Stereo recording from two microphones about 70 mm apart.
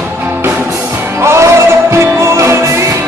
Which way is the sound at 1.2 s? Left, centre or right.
Right.